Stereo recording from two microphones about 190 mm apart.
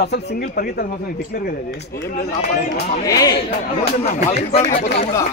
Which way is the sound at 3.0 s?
20° left (ahead or behind).